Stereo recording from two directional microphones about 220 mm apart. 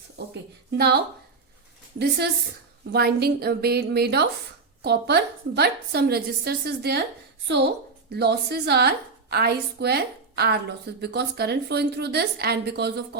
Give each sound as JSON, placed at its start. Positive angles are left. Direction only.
{"t": 0.7, "sound": "speech", "side_deg": -45}
{"t": 2.0, "sound": "a woman's voice", "side_deg": -45}